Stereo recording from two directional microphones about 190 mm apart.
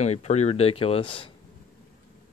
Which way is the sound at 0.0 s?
35° left (ahead or behind).